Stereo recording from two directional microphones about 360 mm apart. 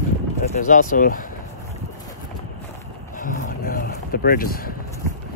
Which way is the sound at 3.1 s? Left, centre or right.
Left.